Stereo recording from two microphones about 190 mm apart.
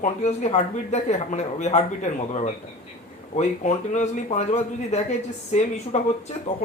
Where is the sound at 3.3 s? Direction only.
35° left (ahead or behind).